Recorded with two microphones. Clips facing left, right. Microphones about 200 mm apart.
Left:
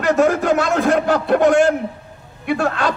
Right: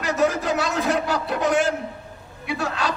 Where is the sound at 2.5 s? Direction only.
55° left (ahead or behind).